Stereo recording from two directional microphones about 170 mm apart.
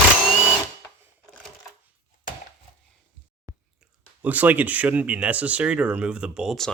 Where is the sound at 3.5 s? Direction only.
15° right (ahead or behind).